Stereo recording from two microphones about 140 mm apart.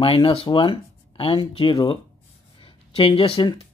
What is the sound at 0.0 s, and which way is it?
Speech, 40° left (ahead or behind).